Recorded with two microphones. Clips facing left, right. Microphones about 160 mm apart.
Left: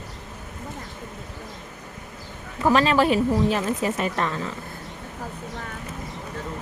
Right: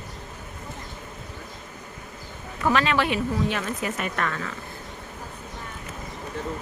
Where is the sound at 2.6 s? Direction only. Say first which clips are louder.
Left 4 dB; 35° left (ahead or behind).